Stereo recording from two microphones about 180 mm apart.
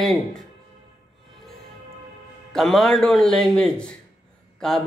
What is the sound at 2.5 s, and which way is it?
A man's voice, centre (ahead or behind).